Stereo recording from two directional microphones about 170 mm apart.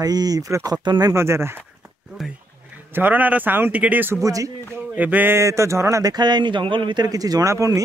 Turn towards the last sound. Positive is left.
turn(degrees=-20)  # may be behind; listen again after turning